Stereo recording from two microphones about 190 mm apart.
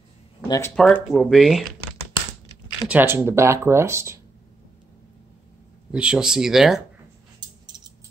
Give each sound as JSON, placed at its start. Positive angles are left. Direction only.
{"t": 0.4, "sound": "speech", "side_deg": 15}
{"t": 2.9, "sound": "speech", "side_deg": -10}
{"t": 5.9, "sound": "speech", "side_deg": -5}
{"t": 7.3, "sound": "a sound", "side_deg": -20}